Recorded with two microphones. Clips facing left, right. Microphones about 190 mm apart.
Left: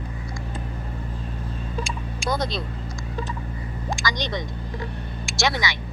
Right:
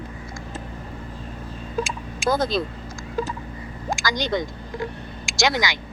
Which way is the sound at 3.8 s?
Centre (ahead or behind).